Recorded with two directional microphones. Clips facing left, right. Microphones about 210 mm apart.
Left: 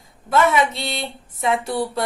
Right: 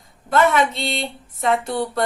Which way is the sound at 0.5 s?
Centre (ahead or behind).